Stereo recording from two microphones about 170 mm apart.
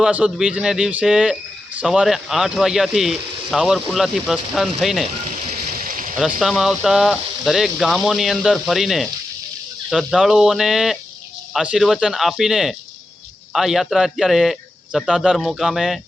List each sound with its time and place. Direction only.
0.0 s speech: 5° right (ahead or behind)
5.8 s a sound: 55° right (ahead or behind)
6.4 s speech: centre (ahead or behind)